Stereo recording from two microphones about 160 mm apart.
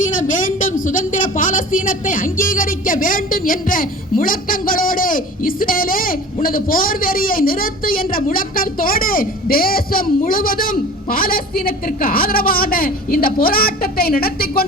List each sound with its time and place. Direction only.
0.0 s a woman's voice: 55° left (ahead or behind)